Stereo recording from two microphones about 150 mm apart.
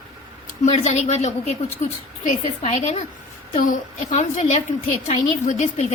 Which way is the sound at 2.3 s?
55° left (ahead or behind).